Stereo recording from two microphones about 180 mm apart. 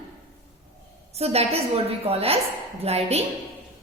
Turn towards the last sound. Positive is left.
turn(degrees=-35)  # may be behind; listen again after turning